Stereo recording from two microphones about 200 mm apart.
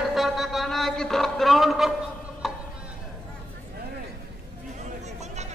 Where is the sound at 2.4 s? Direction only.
Centre (ahead or behind).